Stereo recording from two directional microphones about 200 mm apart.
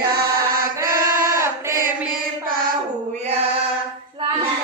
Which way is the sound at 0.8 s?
15° right (ahead or behind).